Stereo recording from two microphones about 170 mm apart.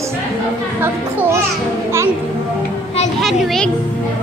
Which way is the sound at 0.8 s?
15° right (ahead or behind).